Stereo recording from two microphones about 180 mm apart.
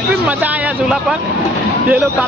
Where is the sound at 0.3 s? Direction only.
10° right (ahead or behind).